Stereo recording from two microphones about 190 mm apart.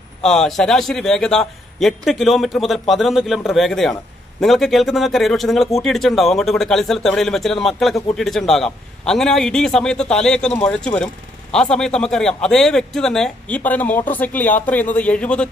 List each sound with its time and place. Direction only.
0.2 s speech: centre (ahead or behind)